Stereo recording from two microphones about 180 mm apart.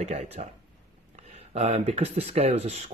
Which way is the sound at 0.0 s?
40° right (ahead or behind).